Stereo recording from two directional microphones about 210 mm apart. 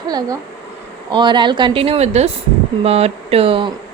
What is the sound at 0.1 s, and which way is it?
Speech, 20° right (ahead or behind).